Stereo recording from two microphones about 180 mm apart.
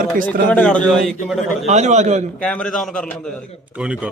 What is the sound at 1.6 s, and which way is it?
Speech, 40° right (ahead or behind).